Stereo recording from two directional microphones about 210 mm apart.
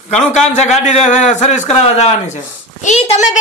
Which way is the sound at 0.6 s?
30° left (ahead or behind).